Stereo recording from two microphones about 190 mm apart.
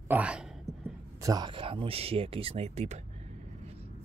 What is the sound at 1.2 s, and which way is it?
Speech, 20° right (ahead or behind).